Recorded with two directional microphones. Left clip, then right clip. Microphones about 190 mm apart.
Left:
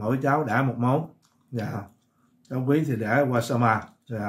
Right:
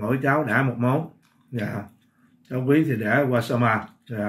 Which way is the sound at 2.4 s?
40° left (ahead or behind).